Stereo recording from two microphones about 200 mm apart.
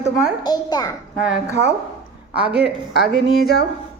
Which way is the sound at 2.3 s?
5° right (ahead or behind).